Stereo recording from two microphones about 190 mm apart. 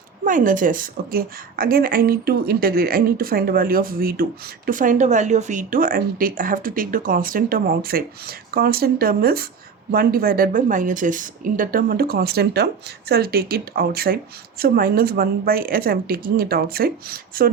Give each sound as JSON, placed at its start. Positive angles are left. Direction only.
{"t": 0.3, "sound": "a woman's voice", "side_deg": -45}